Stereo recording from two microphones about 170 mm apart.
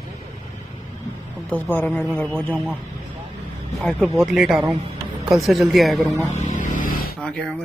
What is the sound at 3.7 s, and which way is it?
Speech, centre (ahead or behind).